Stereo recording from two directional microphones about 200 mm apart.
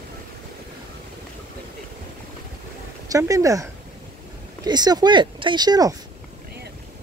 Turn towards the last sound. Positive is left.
turn(degrees=-20)  # may be behind; listen again after turning